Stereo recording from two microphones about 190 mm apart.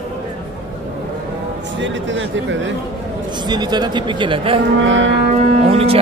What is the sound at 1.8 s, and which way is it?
Speech, 75° right (ahead or behind).